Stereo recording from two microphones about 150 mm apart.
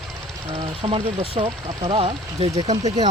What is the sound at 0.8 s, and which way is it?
Speech, 35° right (ahead or behind).